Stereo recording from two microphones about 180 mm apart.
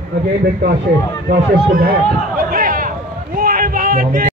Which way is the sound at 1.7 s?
55° right (ahead or behind).